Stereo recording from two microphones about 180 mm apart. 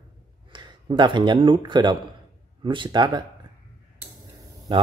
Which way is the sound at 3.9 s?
20° right (ahead or behind).